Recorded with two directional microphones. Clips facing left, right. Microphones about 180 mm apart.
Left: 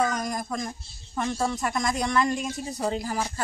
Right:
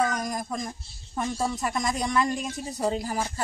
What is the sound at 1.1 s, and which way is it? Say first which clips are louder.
A woman's voice: left 1 dB; 10° right (ahead or behind).